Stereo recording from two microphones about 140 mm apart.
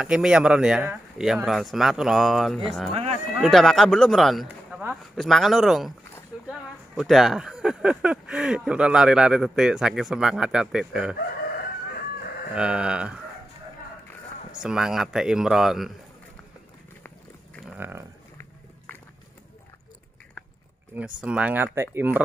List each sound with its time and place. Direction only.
0.0 s speech: 5° right (ahead or behind)
2.9 s speech: 45° right (ahead or behind)
3.3 s speech: centre (ahead or behind)
7.0 s speech: centre (ahead or behind)
12.5 s speech: 5° right (ahead or behind)
14.6 s speech: 5° right (ahead or behind)
17.7 s speech: 15° right (ahead or behind)
20.9 s speech: 10° right (ahead or behind)